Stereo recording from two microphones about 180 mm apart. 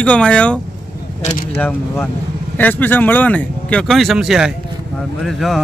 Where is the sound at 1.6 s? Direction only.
10° left (ahead or behind).